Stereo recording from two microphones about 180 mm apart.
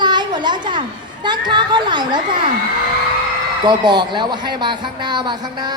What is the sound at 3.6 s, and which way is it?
A woman's voice, 25° right (ahead or behind).